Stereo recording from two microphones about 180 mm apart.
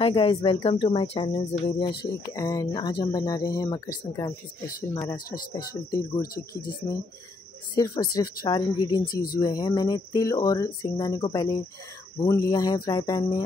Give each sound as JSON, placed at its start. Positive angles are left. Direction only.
{"t": 0.0, "sound": "speech", "side_deg": 30}
{"t": 6.3, "sound": "speech", "side_deg": 50}
{"t": 7.7, "sound": "speech", "side_deg": 25}
{"t": 9.0, "sound": "speech", "side_deg": 55}
{"t": 9.4, "sound": "speech", "side_deg": 20}